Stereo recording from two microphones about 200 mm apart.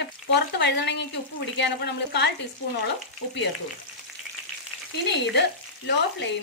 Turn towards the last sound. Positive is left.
turn(degrees=60)  # may be behind; listen again after turning